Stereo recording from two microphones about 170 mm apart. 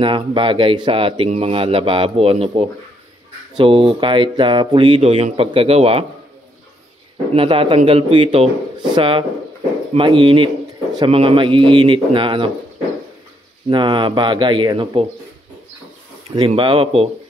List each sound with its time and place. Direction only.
0.0 s speech: 30° right (ahead or behind)
7.3 s speech: 30° right (ahead or behind)
13.7 s speech: 30° right (ahead or behind)
16.3 s speech: 30° right (ahead or behind)